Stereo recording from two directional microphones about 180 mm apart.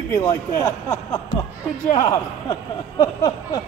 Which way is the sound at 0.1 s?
15° left (ahead or behind).